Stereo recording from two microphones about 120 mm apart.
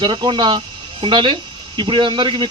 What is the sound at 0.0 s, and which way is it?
Speech, 40° right (ahead or behind).